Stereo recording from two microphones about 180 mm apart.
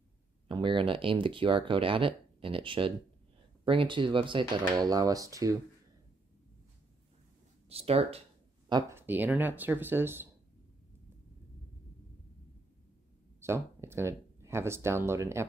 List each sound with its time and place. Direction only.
0.5 s speech: 30° right (ahead or behind)
7.6 s speech: 35° right (ahead or behind)
8.6 s speech: 25° right (ahead or behind)
9.0 s speech: 10° right (ahead or behind)
13.4 s speech: 15° right (ahead or behind)